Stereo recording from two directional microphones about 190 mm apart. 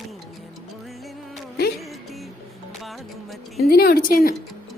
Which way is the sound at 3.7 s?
55° left (ahead or behind).